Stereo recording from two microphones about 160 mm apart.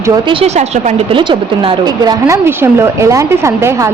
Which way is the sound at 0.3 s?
40° right (ahead or behind).